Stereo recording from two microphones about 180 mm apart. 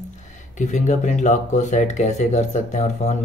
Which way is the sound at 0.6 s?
40° left (ahead or behind).